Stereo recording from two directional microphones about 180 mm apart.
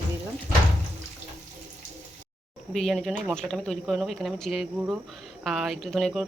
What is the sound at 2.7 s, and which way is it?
Speech, centre (ahead or behind).